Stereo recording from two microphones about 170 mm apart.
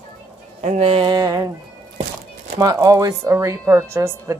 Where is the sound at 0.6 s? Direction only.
35° right (ahead or behind); by 1.5 s 20° right (ahead or behind).